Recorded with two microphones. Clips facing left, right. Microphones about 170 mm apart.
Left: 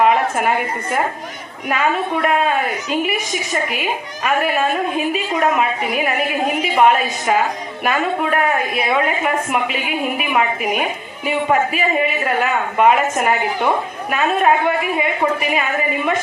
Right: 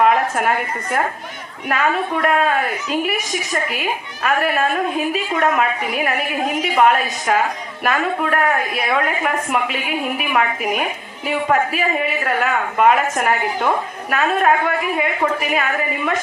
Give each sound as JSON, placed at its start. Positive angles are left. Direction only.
{"t": 0.0, "sound": "a woman's voice", "side_deg": 5}